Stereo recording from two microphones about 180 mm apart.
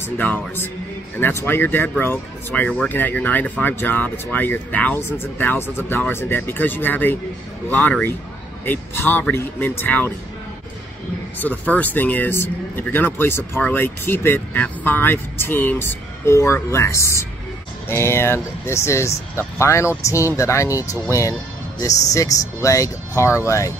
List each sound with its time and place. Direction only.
0.2 s speech: 10° left (ahead or behind)
11.3 s speech: 10° left (ahead or behind)